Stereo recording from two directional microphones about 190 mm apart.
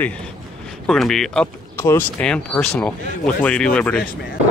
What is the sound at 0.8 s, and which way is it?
Speech, centre (ahead or behind).